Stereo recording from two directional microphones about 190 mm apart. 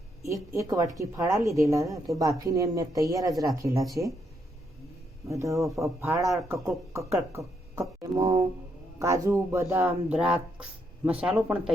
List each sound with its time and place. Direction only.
0.2 s speech: 15° right (ahead or behind)
5.3 s speech: 15° right (ahead or behind)
5.6 s speech: centre (ahead or behind)
6.5 s speech: 15° right (ahead or behind)